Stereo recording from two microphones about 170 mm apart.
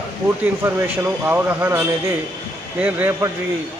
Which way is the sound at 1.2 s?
10° right (ahead or behind).